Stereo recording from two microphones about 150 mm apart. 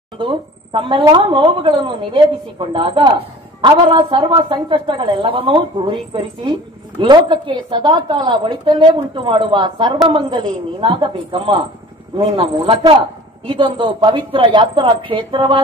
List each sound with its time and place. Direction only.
0.2 s a woman's voice: 35° right (ahead or behind)
7.0 s a woman's voice: 30° right (ahead or behind)
12.2 s a man's voice: 45° right (ahead or behind)
13.5 s a woman's voice: 30° right (ahead or behind)